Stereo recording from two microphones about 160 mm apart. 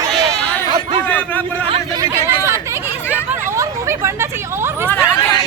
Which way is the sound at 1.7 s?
25° right (ahead or behind).